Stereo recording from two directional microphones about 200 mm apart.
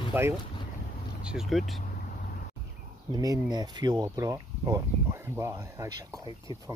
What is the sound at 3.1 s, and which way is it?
Speech, 20° right (ahead or behind).